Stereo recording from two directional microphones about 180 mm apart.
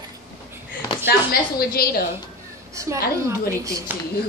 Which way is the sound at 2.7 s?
15° right (ahead or behind).